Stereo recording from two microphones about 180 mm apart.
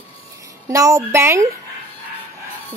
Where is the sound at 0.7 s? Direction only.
20° right (ahead or behind).